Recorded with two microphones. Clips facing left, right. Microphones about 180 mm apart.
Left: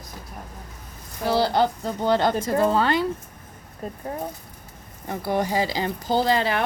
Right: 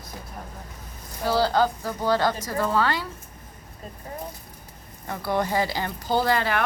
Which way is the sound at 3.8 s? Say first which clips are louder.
Left 8 dB; 55° left (ahead or behind).